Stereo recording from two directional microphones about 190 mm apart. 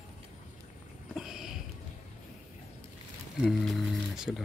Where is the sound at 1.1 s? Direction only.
Centre (ahead or behind).